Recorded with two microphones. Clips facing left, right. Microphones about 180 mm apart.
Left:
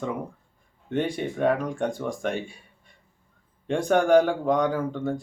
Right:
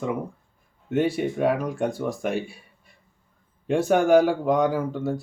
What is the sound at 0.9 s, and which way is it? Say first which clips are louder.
Speech: right 4 dB; 5° right (ahead or behind).